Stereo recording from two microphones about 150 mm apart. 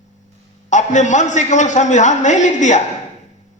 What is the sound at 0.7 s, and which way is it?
A man's voice, 50° left (ahead or behind).